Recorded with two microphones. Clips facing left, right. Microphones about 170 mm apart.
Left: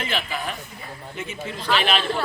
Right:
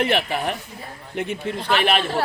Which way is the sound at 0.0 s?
65° right (ahead or behind).